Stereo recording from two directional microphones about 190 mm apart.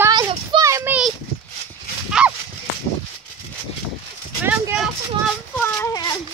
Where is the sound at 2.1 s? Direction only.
5° right (ahead or behind).